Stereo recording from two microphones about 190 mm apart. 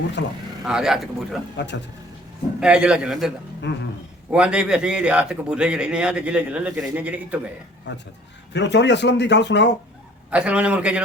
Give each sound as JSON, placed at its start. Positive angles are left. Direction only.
{"t": 0.2, "sound": "speech", "side_deg": 70}
{"t": 0.6, "sound": "a man's voice", "side_deg": -5}
{"t": 1.5, "sound": "speech", "side_deg": 65}
{"t": 2.6, "sound": "a man's voice", "side_deg": -5}
{"t": 3.7, "sound": "speech", "side_deg": 65}
{"t": 4.3, "sound": "a man's voice", "side_deg": -5}
{"t": 7.9, "sound": "speech", "side_deg": 65}
{"t": 10.2, "sound": "a man's voice", "side_deg": -5}